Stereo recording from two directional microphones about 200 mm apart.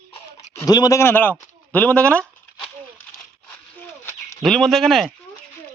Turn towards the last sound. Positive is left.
turn(degrees=0)  # may be behind; listen again after turning